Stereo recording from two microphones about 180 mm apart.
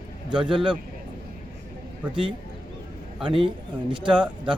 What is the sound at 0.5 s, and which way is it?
Speech, 25° right (ahead or behind).